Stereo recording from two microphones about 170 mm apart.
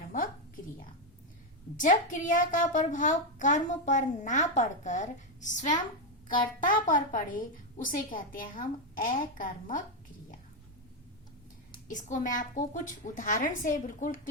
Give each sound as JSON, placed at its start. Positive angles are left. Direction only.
{"t": 0.1, "sound": "a sound", "side_deg": 55}
{"t": 1.7, "sound": "a woman's voice", "side_deg": 50}
{"t": 11.9, "sound": "a woman's voice", "side_deg": 50}